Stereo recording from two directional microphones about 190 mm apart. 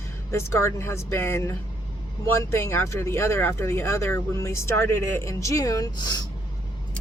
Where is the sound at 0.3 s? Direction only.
15° left (ahead or behind).